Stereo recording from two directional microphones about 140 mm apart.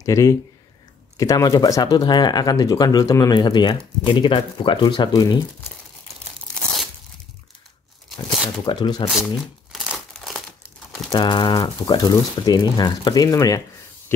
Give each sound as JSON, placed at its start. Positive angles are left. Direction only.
{"t": 0.0, "sound": "speech", "side_deg": 25}
{"t": 8.6, "sound": "speech", "side_deg": 30}
{"t": 9.1, "sound": "crumpling", "side_deg": 0}
{"t": 11.1, "sound": "speech", "side_deg": 35}